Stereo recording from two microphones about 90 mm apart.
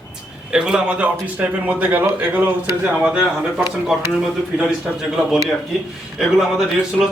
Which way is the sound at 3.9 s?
5° right (ahead or behind).